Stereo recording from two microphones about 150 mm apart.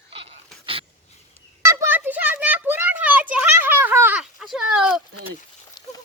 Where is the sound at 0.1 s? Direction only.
40° right (ahead or behind).